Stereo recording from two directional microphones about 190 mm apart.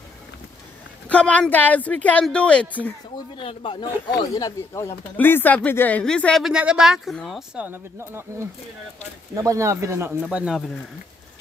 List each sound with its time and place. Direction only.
1.0 s a woman's voice: 5° left (ahead or behind)
3.3 s a man's voice: 25° left (ahead or behind); by 8.3 s 10° right (ahead or behind)
9.3 s speech: 15° right (ahead or behind)